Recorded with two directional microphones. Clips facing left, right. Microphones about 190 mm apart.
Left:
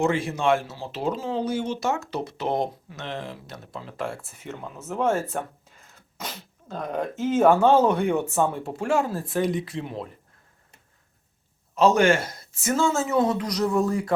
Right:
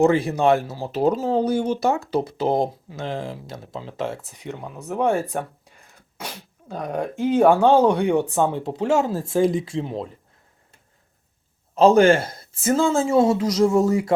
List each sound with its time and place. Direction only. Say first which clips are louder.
0.0 s speech: right 6 dB; 35° right (ahead or behind)
11.9 s speech: right 5 dB; 30° right (ahead or behind)